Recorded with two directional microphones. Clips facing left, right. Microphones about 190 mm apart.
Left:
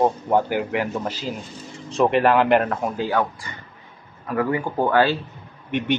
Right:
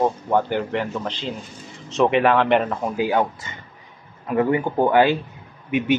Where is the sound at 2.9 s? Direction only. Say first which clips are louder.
Right 6 dB; 20° right (ahead or behind).